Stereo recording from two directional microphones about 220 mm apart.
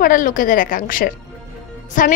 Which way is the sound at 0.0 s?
40° left (ahead or behind).